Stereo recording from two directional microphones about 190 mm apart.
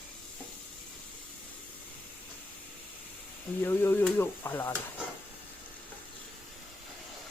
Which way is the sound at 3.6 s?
10° left (ahead or behind).